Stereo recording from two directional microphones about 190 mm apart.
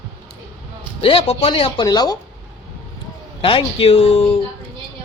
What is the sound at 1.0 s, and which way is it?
Speech, 30° left (ahead or behind).